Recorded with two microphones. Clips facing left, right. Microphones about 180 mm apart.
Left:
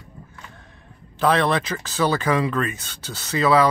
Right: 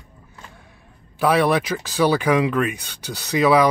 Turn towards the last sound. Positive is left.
turn(degrees=-15)  # may be behind; listen again after turning